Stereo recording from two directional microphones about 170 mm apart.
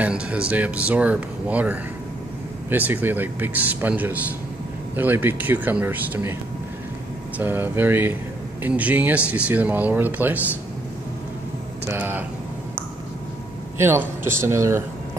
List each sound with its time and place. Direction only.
0.0 s speech: 5° right (ahead or behind)
7.3 s speech: 10° right (ahead or behind)
11.9 s speech: 10° right (ahead or behind)
13.7 s speech: 15° right (ahead or behind)